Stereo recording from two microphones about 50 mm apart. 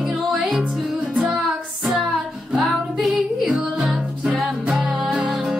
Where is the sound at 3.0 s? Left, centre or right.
Centre.